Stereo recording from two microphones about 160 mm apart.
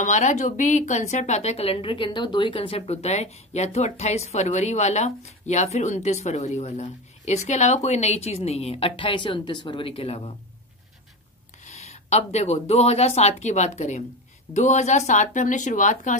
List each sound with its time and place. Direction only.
0.0 s a woman's voice: 50° left (ahead or behind)
11.6 s a woman's voice: 45° left (ahead or behind)